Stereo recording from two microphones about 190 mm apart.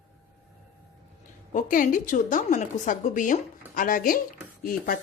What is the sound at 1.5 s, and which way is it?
A woman's voice, 45° left (ahead or behind).